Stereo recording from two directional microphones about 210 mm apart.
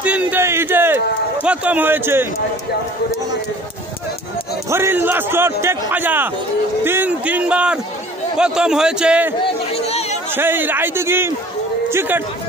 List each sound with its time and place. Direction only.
0.0 s a man's voice: 5° right (ahead or behind)
4.6 s a man's voice: 10° right (ahead or behind)
10.3 s a man's voice: 10° right (ahead or behind)